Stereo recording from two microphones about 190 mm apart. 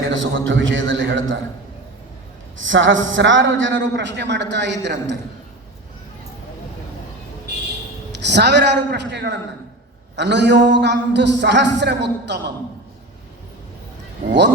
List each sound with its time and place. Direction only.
0.1 s a man's voice: 90° right
2.6 s a man's voice: 85° right; by 5.1 s 70° right (ahead or behind)
8.2 s a man's voice: 65° right (ahead or behind)
14.3 s speech: 65° right (ahead or behind)